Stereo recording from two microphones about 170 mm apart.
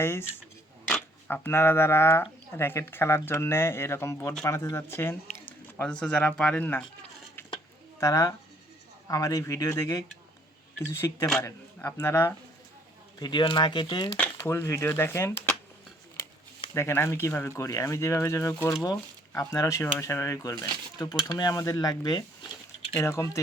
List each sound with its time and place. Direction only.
0.0 s speech: 15° left (ahead or behind)
7.9 s speech: 20° left (ahead or behind)
13.1 s speech: 25° left (ahead or behind)
14.4 s speech: 15° left (ahead or behind)
16.7 s speech: 15° left (ahead or behind)